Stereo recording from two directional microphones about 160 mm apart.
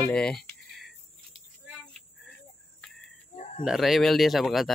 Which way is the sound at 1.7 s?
Centre (ahead or behind).